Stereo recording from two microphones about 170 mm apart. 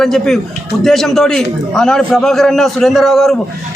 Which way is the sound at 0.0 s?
Centre (ahead or behind).